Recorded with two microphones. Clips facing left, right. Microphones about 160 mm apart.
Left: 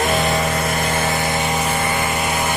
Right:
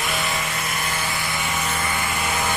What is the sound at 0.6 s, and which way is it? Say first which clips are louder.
Vehicle: left 8 dB; 50° left (ahead or behind).